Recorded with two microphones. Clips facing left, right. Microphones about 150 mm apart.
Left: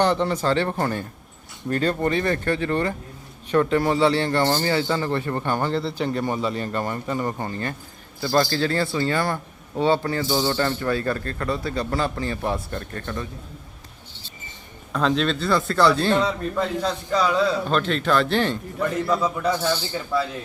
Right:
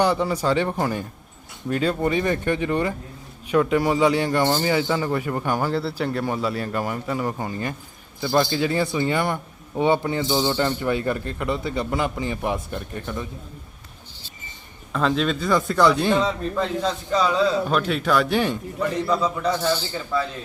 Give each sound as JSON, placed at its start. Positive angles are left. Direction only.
{"t": 0.0, "sound": "a man's voice", "side_deg": -10}
{"t": 14.9, "sound": "speech", "side_deg": 0}
{"t": 16.2, "sound": "a man's voice", "side_deg": 0}
{"t": 19.0, "sound": "a man's voice", "side_deg": 5}